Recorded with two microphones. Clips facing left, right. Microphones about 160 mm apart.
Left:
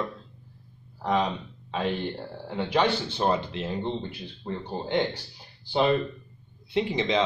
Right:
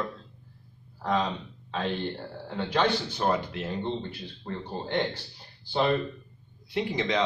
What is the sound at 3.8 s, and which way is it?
Speech, 15° left (ahead or behind).